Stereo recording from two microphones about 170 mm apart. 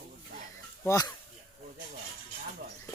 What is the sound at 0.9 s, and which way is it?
Speech, 20° left (ahead or behind).